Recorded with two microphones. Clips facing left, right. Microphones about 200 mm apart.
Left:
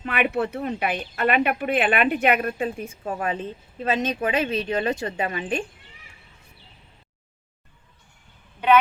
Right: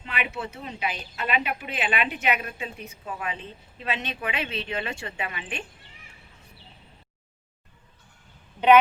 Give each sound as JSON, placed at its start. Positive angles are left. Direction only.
{"t": 0.0, "sound": "speech", "side_deg": 55}